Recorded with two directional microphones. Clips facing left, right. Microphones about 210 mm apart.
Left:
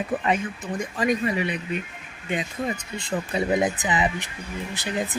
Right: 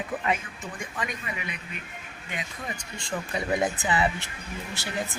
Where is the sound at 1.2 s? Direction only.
30° left (ahead or behind).